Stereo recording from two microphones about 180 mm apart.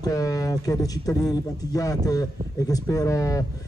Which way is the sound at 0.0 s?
20° left (ahead or behind).